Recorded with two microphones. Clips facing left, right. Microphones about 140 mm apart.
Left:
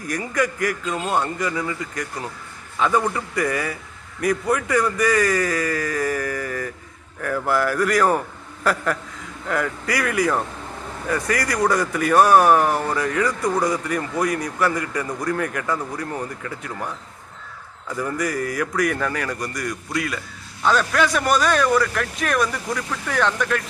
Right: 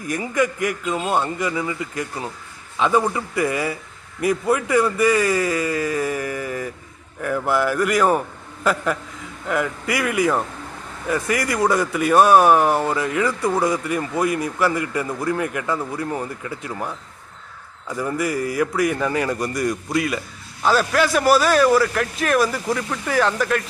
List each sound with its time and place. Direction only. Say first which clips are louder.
0.1 s speech: right 2 dB; 20° right (ahead or behind)
17.9 s speech: right 1 dB; 20° right (ahead or behind)
20.7 s a man's voice: right 1 dB; 5° right (ahead or behind)